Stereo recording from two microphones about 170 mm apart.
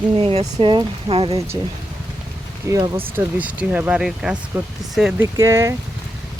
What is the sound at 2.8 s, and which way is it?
Speech, 30° right (ahead or behind).